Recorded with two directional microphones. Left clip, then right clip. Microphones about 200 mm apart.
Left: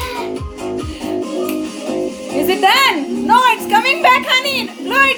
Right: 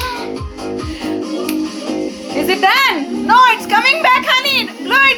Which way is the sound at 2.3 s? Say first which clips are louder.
Even; 20° left (ahead or behind).